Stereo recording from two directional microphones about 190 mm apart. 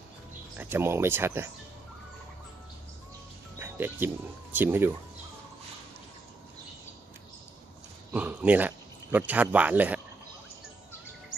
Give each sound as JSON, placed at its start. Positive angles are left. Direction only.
{"t": 0.6, "sound": "speech", "side_deg": -10}
{"t": 3.5, "sound": "music", "side_deg": -10}
{"t": 4.6, "sound": "speech", "side_deg": -10}
{"t": 8.1, "sound": "speech", "side_deg": -10}